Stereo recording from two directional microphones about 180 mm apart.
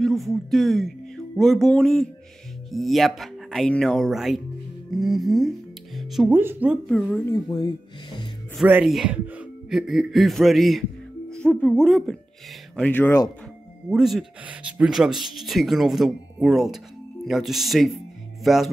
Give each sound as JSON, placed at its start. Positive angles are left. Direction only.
{"t": 0.0, "sound": "speech", "side_deg": 0}
{"t": 5.9, "sound": "music", "side_deg": 0}
{"t": 6.3, "sound": "speech", "side_deg": -10}
{"t": 6.9, "sound": "speech", "side_deg": 5}
{"t": 7.4, "sound": "speech", "side_deg": 25}
{"t": 8.5, "sound": "a man's voice", "side_deg": -5}
{"t": 13.8, "sound": "speech", "side_deg": 0}
{"t": 18.4, "sound": "music", "side_deg": 0}